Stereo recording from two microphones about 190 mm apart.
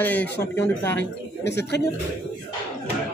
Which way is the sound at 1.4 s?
65° left (ahead or behind).